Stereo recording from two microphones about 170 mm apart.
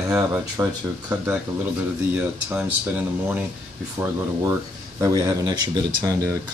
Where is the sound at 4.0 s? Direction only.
20° right (ahead or behind).